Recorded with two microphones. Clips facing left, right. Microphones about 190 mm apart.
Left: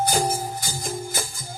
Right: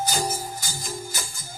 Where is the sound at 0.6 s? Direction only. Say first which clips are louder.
Left 4 dB; 55° left (ahead or behind).